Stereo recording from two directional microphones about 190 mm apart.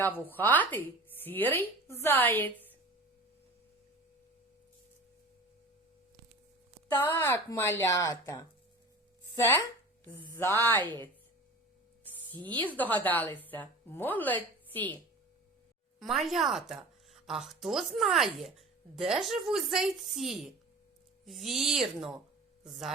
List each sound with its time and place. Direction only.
0.0 s a woman's voice: 10° left (ahead or behind)
6.9 s a woman's voice: 15° left (ahead or behind)
10.3 s a woman's voice: 10° left (ahead or behind)
12.3 s speech: 25° right (ahead or behind)
12.6 s a woman's voice: 10° left (ahead or behind)
16.0 s a woman's voice: centre (ahead or behind)